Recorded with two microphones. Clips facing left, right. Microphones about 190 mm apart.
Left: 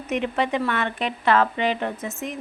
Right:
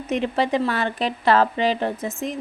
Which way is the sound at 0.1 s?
35° right (ahead or behind).